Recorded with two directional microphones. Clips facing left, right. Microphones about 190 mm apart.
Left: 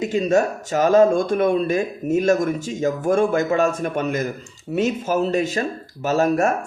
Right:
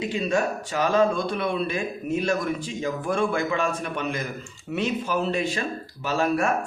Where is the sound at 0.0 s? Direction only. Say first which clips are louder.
Left 6 dB; 45° left (ahead or behind).